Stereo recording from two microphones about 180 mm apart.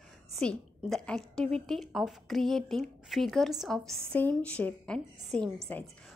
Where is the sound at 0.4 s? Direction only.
5° left (ahead or behind).